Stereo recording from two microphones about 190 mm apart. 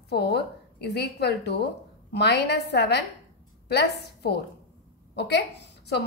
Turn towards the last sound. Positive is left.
turn(degrees=65)  # may be behind; listen again after turning